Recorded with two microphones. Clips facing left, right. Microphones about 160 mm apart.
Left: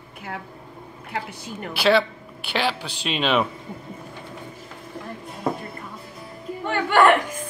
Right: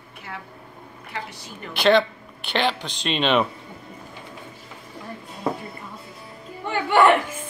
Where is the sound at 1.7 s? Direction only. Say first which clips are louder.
Right 1 dB; 5° left (ahead or behind).